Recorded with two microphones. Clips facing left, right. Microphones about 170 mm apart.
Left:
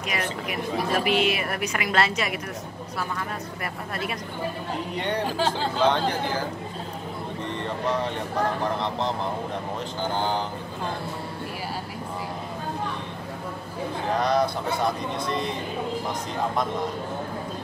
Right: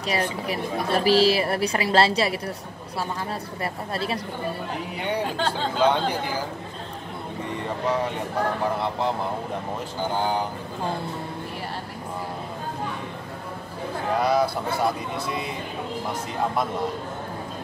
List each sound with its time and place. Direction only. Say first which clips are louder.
0.0 s a woman's voice: right 3 dB; 30° right (ahead or behind)
3.9 s a woman's voice: right 3 dB; 30° right (ahead or behind)
4.9 s speech: even; 10° right (ahead or behind)
8.7 s speech: right 2 dB; 10° right (ahead or behind)
14.2 s speech: right 1 dB; 5° right (ahead or behind)